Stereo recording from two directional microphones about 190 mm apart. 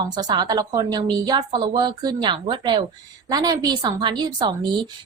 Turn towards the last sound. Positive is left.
turn(degrees=-25)  # may be behind; listen again after turning